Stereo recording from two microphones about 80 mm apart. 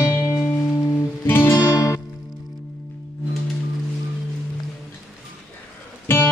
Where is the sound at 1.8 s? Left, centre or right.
Left.